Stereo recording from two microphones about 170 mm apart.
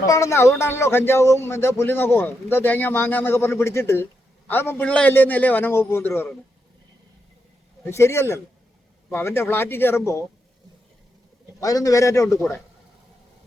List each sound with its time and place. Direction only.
0.0 s speech: 20° left (ahead or behind)
7.9 s speech: 15° left (ahead or behind)
11.6 s a man's voice: 20° left (ahead or behind)